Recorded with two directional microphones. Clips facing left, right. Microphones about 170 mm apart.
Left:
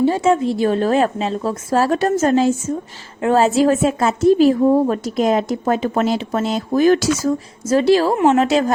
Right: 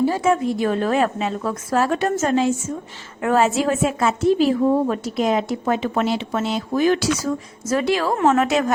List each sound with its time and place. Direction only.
0.0 s a woman's voice: 25° left (ahead or behind)
3.2 s a woman's voice: 30° left (ahead or behind)
7.7 s a woman's voice: 30° left (ahead or behind)